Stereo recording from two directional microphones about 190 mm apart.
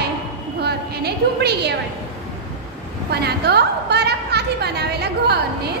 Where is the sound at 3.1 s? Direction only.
60° right (ahead or behind).